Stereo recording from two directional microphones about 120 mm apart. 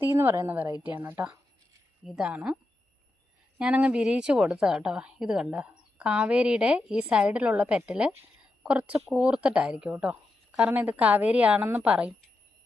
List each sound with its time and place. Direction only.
0.0 s a woman's voice: 20° right (ahead or behind)
3.6 s a woman's voice: 10° right (ahead or behind)